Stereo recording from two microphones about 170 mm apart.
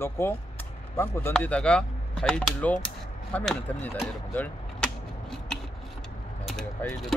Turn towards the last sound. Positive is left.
turn(degrees=5)  # may be behind; listen again after turning